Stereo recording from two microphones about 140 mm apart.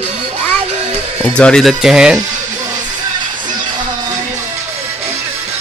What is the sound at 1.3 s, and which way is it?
Speech, 5° left (ahead or behind).